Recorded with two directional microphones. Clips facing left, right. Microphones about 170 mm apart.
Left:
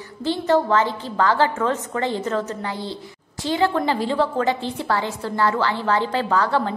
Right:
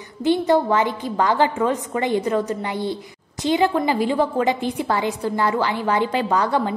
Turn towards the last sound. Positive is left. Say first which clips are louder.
# right 1 dB
turn(degrees=-15)  # may be behind; listen again after turning